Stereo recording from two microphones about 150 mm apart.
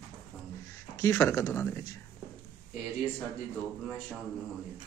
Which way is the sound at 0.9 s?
20° left (ahead or behind).